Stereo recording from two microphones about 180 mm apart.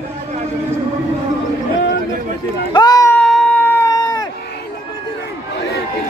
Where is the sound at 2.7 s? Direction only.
25° left (ahead or behind).